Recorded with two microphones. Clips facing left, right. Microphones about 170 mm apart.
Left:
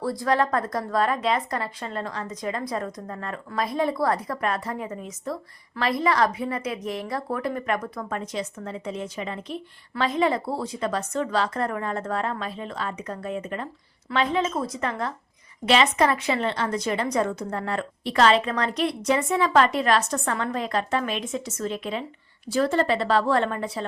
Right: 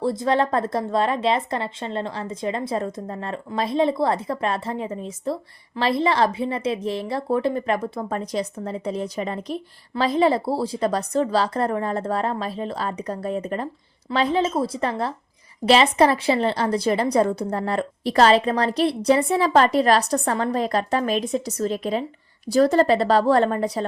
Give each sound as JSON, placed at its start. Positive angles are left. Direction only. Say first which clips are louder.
{"t": 0.0, "sound": "a woman's voice", "louder": "right 3 dB", "side_deg": -25}